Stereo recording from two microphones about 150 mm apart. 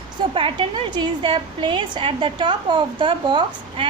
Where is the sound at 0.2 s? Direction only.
35° right (ahead or behind).